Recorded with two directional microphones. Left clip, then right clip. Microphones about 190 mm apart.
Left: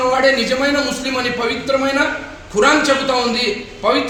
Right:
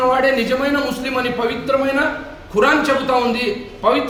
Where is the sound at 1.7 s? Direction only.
25° right (ahead or behind).